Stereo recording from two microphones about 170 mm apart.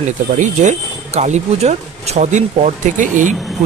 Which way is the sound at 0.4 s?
45° right (ahead or behind).